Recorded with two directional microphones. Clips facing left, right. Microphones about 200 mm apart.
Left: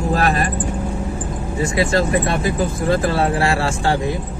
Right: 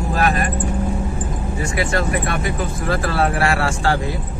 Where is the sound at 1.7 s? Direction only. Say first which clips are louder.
Left 4 dB; 25° left (ahead or behind).